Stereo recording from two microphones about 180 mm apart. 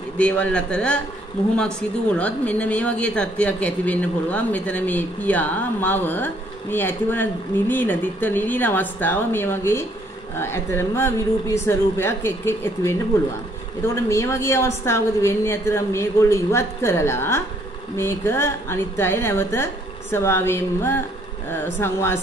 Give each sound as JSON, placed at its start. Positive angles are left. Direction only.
{"t": 0.2, "sound": "a woman's voice", "side_deg": 10}